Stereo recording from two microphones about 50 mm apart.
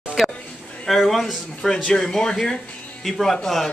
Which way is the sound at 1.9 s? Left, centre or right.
Centre.